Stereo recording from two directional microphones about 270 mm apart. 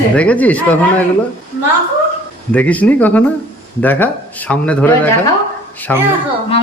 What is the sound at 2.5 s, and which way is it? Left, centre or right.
A man's voice, centre.